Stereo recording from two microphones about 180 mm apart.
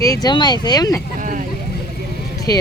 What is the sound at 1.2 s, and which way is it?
Speech, 45° right (ahead or behind).